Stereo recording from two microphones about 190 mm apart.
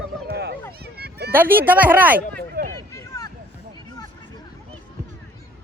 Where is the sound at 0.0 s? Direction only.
60° right (ahead or behind).